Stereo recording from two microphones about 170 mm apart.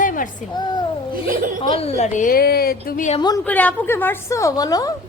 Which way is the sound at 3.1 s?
25° left (ahead or behind).